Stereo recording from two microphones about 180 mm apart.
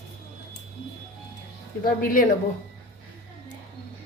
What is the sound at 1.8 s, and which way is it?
Speech, 55° left (ahead or behind).